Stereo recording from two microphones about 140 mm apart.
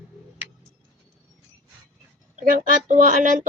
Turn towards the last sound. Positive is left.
turn(degrees=-65)  # may be behind; listen again after turning